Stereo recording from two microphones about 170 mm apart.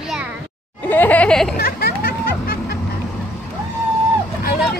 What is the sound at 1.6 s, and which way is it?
Music, 65° left (ahead or behind).